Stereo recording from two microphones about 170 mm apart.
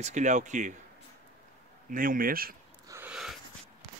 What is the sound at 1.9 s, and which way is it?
Speech, 55° right (ahead or behind).